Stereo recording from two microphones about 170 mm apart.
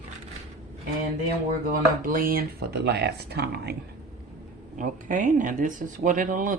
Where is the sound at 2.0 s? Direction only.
55° right (ahead or behind).